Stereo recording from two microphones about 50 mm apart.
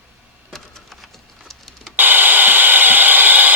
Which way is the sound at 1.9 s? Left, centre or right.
Right.